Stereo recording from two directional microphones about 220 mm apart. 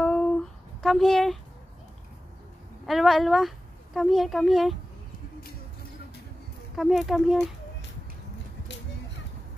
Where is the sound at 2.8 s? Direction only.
Centre (ahead or behind).